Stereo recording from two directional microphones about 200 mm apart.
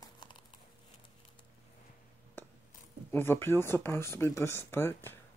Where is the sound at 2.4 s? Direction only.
10° left (ahead or behind).